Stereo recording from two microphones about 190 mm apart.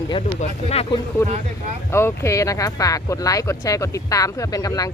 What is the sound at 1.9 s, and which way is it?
Speech, 15° left (ahead or behind).